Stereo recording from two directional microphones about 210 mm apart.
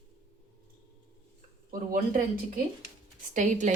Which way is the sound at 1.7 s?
40° right (ahead or behind).